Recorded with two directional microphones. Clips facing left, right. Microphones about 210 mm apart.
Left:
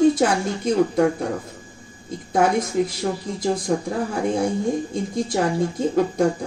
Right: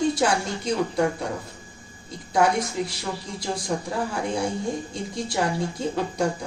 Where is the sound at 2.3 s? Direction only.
50° left (ahead or behind).